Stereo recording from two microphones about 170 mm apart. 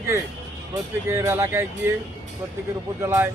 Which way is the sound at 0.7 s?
15° right (ahead or behind).